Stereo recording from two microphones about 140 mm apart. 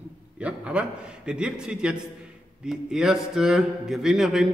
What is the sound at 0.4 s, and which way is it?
A man's voice, 10° right (ahead or behind).